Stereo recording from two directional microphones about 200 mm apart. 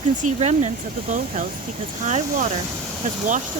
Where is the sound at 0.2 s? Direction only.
35° right (ahead or behind).